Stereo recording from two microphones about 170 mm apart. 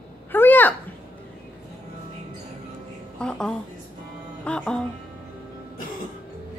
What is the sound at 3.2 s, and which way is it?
A woman's voice, 5° left (ahead or behind).